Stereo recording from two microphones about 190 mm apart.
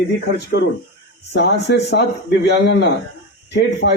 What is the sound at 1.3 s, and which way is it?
Speech, 60° left (ahead or behind).